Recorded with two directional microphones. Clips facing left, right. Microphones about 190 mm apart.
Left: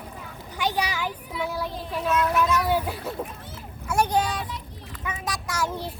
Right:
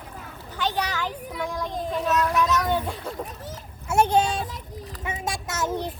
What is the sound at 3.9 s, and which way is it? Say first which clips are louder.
Boat: right 3 dB; 25° right (ahead or behind).